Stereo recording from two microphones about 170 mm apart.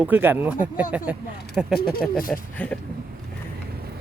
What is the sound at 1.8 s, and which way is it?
Speech, 60° left (ahead or behind).